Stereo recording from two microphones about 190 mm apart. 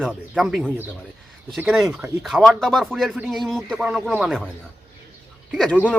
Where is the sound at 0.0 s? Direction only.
Centre (ahead or behind).